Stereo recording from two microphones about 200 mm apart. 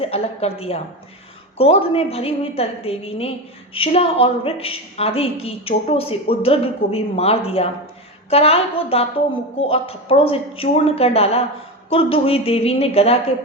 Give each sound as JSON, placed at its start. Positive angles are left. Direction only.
{"t": 0.0, "sound": "a woman's voice", "side_deg": 30}